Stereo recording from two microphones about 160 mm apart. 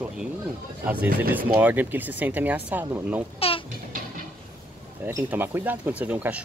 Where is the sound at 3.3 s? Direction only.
35° left (ahead or behind).